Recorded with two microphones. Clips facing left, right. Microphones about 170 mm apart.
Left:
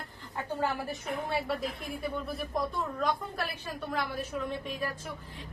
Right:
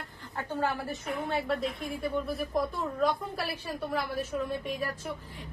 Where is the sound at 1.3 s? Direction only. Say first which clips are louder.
Right 3 dB; centre (ahead or behind).